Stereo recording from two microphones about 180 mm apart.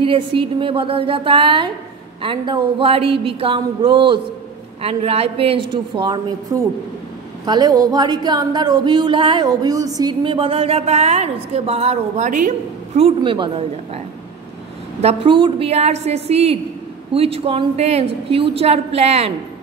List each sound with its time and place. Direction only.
0.0 s speech: 30° right (ahead or behind)
15.0 s a woman's voice: 30° right (ahead or behind)